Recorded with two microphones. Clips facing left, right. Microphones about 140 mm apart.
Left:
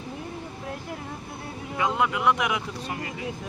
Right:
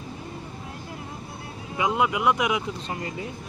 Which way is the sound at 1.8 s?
15° right (ahead or behind).